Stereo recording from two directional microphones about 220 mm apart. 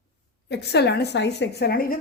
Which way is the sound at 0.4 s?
50° left (ahead or behind).